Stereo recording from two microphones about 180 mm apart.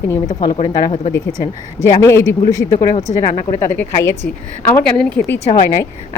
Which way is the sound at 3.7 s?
10° left (ahead or behind).